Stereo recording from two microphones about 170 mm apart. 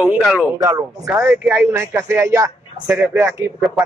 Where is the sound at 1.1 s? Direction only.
10° right (ahead or behind).